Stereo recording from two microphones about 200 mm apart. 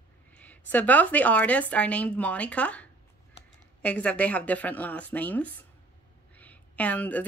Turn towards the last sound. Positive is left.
turn(degrees=10)  # may be behind; listen again after turning